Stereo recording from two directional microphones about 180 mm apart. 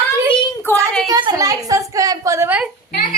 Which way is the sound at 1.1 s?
20° right (ahead or behind).